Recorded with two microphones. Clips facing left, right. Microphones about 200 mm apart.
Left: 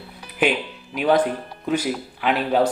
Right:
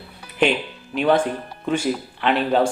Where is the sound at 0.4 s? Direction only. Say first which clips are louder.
Right 1 dB; 5° left (ahead or behind).